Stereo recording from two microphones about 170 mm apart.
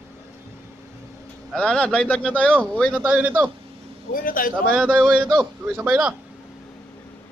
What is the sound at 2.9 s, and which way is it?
Speech, 10° right (ahead or behind).